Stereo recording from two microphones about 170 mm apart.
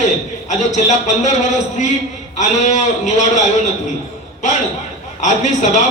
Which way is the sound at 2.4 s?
45° left (ahead or behind).